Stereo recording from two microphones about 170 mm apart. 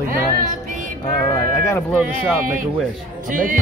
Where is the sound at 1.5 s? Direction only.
15° left (ahead or behind).